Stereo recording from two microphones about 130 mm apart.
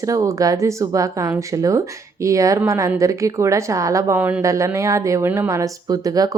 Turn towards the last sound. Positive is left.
turn(degrees=-25)  # may be behind; listen again after turning